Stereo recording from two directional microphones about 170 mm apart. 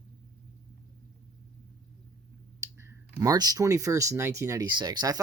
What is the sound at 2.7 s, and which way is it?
Speech, 15° right (ahead or behind).